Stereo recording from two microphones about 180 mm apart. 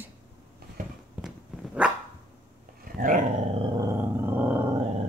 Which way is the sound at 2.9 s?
50° right (ahead or behind).